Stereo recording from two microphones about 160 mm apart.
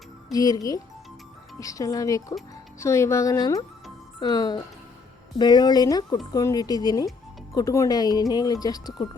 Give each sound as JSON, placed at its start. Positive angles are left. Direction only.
{"t": 0.3, "sound": "speech", "side_deg": 25}